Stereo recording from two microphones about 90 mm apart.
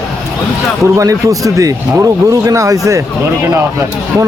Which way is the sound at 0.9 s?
35° right (ahead or behind).